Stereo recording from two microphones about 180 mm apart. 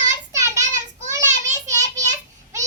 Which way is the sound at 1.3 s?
40° right (ahead or behind).